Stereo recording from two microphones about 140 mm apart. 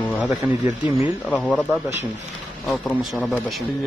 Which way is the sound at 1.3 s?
Centre (ahead or behind).